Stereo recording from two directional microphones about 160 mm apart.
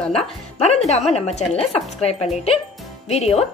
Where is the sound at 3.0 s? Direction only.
40° left (ahead or behind).